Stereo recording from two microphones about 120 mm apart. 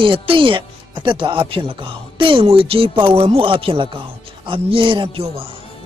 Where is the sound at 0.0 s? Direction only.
45° right (ahead or behind).